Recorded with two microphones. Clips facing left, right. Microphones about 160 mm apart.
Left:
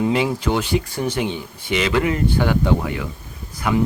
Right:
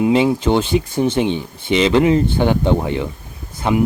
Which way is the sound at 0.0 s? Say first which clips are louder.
Right 5 dB; 20° right (ahead or behind).